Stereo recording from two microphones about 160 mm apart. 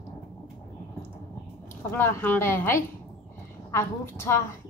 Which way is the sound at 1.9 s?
15° left (ahead or behind).